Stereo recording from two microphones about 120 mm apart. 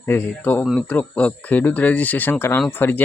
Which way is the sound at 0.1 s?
15° left (ahead or behind).